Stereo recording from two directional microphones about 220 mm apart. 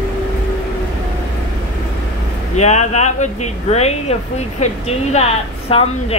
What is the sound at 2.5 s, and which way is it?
Speech, 30° left (ahead or behind).